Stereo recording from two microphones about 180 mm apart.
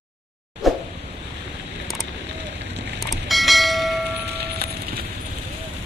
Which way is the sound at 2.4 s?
75° right (ahead or behind).